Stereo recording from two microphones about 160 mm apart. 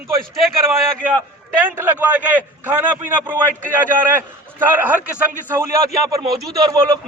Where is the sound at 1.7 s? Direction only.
10° right (ahead or behind).